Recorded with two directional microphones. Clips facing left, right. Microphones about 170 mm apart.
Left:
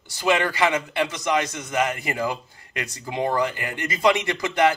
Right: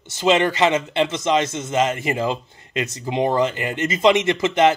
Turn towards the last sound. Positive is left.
turn(degrees=-20)  # may be behind; listen again after turning